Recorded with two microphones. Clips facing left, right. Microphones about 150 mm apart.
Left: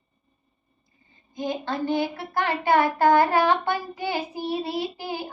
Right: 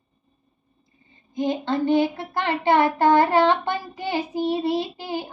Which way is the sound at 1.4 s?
20° right (ahead or behind).